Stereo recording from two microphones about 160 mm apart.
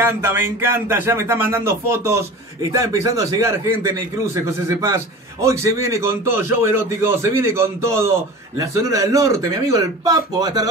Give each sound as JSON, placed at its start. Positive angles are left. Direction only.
{"t": 0.0, "sound": "a man's voice", "side_deg": -15}